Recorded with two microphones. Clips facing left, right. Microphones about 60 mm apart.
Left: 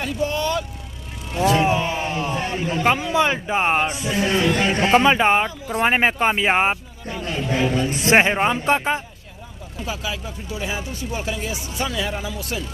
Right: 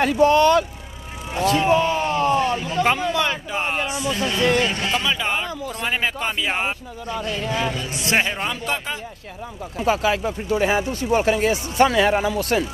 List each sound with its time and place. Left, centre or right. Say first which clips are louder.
0.0 s speech: right 8 dB; right
1.4 s speech: right 1 dB; left
9.8 s speech: right 9 dB; right